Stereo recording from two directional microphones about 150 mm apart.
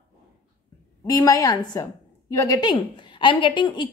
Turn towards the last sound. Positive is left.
turn(degrees=30)  # may be behind; listen again after turning